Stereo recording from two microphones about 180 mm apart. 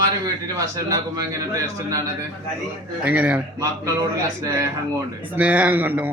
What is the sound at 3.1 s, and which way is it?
A man's voice, 10° right (ahead or behind).